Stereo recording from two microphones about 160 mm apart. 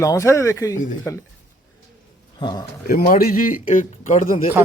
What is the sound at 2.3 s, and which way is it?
Speech, 25° left (ahead or behind).